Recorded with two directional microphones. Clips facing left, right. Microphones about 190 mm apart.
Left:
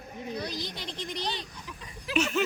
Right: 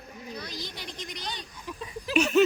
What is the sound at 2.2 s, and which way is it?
Speech, 15° right (ahead or behind).